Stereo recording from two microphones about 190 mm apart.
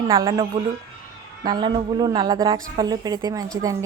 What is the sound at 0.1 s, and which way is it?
A woman's voice, 25° right (ahead or behind).